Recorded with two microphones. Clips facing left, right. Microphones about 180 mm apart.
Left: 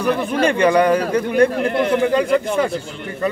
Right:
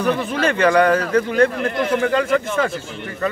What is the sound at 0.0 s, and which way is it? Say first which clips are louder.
Speech: left 2 dB; 10° left (ahead or behind).